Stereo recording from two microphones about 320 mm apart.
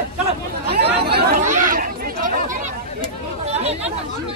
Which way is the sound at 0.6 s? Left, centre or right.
Right.